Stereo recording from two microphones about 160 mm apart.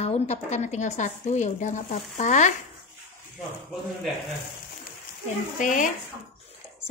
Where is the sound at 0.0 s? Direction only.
45° left (ahead or behind).